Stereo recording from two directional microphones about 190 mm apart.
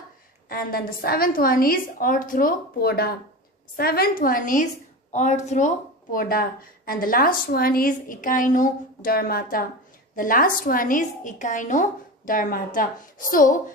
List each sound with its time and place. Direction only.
0.5 s a woman's voice: 50° left (ahead or behind)
6.1 s a woman's voice: 50° left (ahead or behind)